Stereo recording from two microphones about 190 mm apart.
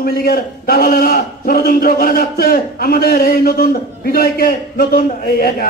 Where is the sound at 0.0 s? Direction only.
50° left (ahead or behind).